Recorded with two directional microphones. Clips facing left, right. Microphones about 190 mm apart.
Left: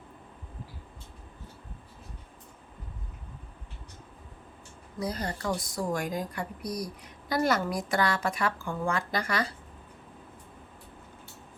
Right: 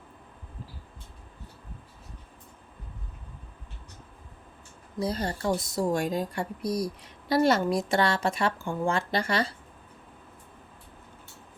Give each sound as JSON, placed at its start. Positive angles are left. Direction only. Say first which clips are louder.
{"t": 4.9, "sound": "speech", "louder": "right 3 dB", "side_deg": -30}